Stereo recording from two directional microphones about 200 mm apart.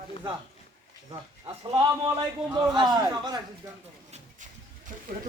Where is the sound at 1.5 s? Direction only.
25° right (ahead or behind).